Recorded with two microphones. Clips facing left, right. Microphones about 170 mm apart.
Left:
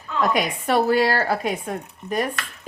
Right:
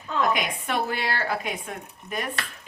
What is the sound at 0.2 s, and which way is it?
Speech, 40° left (ahead or behind).